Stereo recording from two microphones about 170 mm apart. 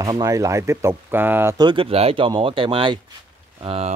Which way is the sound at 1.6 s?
30° right (ahead or behind).